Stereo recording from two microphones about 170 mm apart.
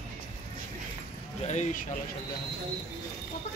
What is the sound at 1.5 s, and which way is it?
Speech, 45° left (ahead or behind).